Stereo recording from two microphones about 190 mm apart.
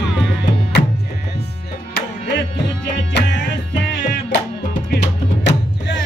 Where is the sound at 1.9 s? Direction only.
60° left (ahead or behind).